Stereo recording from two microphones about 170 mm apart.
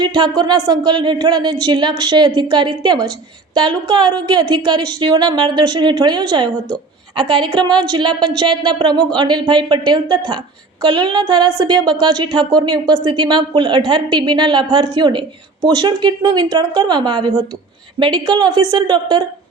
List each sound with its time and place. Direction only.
0.0 s a woman's voice: 25° right (ahead or behind)